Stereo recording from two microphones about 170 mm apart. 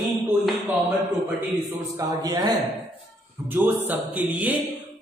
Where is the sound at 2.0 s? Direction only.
25° right (ahead or behind).